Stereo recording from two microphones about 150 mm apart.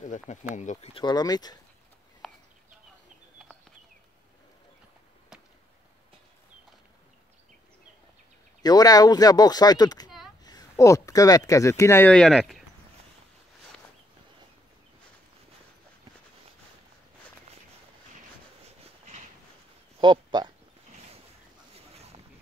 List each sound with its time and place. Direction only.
0.0 s speech: 55° left (ahead or behind)
0.9 s speech: 30° left (ahead or behind)
2.2 s bird: centre (ahead or behind)
8.6 s speech: 25° left (ahead or behind)
12.1 s speech: centre (ahead or behind)
20.0 s a sound: 30° right (ahead or behind)